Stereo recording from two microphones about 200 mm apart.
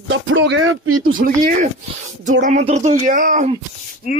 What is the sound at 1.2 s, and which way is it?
Speech, 45° right (ahead or behind).